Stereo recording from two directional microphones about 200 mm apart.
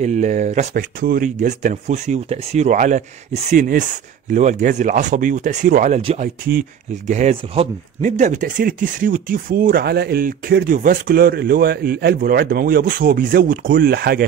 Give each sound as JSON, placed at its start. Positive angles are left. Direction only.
{"t": 0.0, "sound": "speech", "side_deg": -35}